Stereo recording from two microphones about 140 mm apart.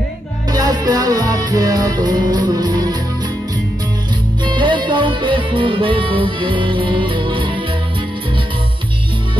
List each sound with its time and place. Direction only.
0.5 s music: 30° right (ahead or behind)
4.5 s music: 35° right (ahead or behind)